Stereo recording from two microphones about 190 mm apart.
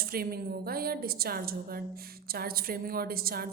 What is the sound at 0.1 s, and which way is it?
A woman's voice, 50° right (ahead or behind).